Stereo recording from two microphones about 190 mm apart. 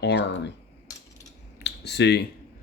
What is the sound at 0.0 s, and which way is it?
Speech, 65° left (ahead or behind).